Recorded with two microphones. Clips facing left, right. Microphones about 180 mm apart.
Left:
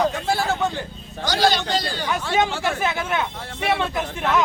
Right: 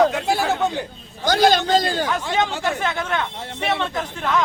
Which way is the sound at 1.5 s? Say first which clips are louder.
Right 5 dB; 50° right (ahead or behind).